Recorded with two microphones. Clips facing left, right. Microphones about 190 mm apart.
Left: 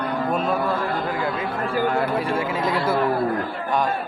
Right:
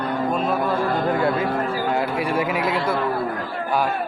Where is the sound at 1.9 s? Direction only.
15° right (ahead or behind).